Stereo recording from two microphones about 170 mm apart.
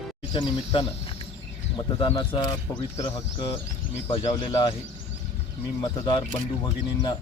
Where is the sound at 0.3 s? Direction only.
30° left (ahead or behind).